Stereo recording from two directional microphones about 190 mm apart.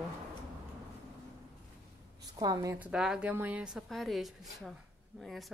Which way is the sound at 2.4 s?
20° right (ahead or behind).